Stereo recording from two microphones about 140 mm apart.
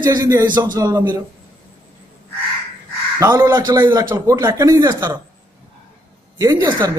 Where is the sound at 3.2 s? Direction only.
30° right (ahead or behind).